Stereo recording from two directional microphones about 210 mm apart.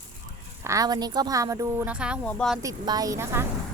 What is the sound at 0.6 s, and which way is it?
Speech, 15° right (ahead or behind).